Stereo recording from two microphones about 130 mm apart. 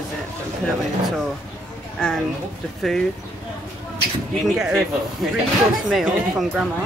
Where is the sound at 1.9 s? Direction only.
5° left (ahead or behind).